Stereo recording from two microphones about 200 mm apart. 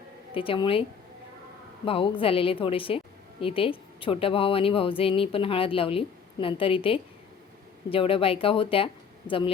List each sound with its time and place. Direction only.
0.3 s speech: 25° left (ahead or behind)